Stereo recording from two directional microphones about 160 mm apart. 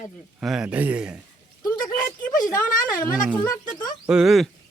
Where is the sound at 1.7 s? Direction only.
25° left (ahead or behind).